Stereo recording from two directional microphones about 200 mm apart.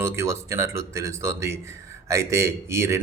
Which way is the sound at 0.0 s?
15° right (ahead or behind).